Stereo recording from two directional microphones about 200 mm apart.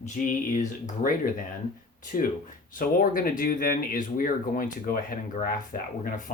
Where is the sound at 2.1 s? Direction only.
40° left (ahead or behind).